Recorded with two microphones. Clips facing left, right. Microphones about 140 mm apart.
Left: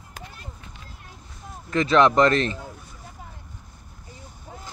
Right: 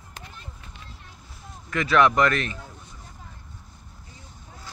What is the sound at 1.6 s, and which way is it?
Speech, 30° left (ahead or behind).